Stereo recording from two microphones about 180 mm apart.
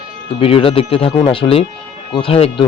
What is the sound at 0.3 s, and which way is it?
Speech, 30° left (ahead or behind).